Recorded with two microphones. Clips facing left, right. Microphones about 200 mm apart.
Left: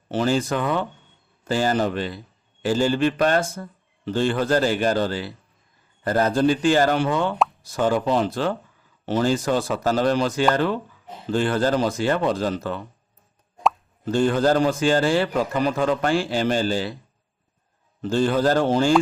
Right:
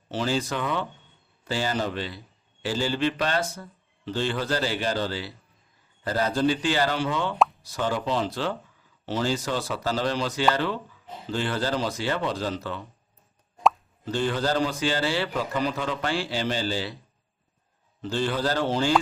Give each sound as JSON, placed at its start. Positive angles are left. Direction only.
{"t": 0.1, "sound": "a man's voice", "side_deg": 50}
{"t": 14.0, "sound": "a man's voice", "side_deg": 45}
{"t": 18.0, "sound": "a man's voice", "side_deg": 45}